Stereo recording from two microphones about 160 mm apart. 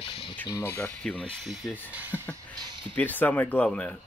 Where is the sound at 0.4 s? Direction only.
10° left (ahead or behind).